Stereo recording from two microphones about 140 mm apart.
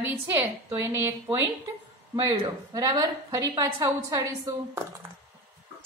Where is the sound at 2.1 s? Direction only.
35° right (ahead or behind).